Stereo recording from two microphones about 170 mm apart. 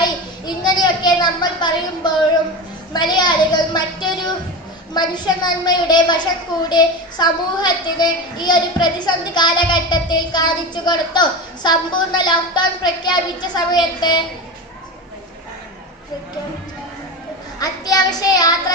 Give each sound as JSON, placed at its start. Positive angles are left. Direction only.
{"t": 0.0, "sound": "a sound", "side_deg": 25}
{"t": 2.9, "sound": "a child's voice", "side_deg": 25}
{"t": 17.6, "sound": "a child's voice", "side_deg": 20}